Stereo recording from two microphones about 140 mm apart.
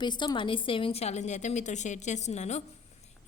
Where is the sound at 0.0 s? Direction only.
30° left (ahead or behind).